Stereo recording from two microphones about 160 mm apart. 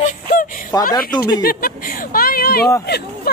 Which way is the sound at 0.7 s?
25° left (ahead or behind).